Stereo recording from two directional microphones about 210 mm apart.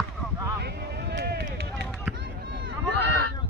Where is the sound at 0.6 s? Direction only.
50° right (ahead or behind).